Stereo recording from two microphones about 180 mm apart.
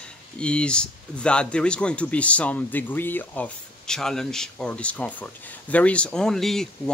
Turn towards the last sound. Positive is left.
turn(degrees=0)  # may be behind; listen again after turning